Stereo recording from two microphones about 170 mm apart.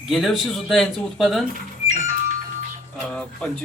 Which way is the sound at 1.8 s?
45° right (ahead or behind).